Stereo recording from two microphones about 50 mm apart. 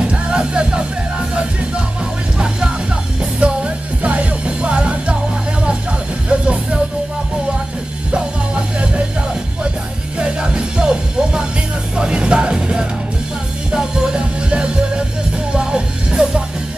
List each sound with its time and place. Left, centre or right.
0.0 s music: centre
2.3 s music: centre
6.2 s music: right
8.1 s music: centre